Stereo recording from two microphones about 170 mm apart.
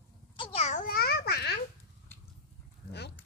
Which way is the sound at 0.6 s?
50° left (ahead or behind).